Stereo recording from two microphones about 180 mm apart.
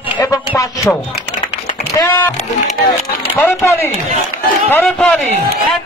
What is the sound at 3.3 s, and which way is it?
Speech, 10° left (ahead or behind).